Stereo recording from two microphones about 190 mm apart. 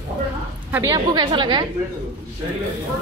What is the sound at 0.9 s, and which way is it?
Speech, 25° right (ahead or behind).